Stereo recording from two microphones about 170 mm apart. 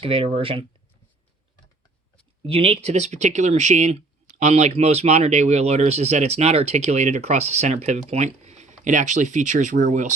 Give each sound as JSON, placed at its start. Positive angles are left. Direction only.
{"t": 0.0, "sound": "speech", "side_deg": -35}
{"t": 2.4, "sound": "speech", "side_deg": -35}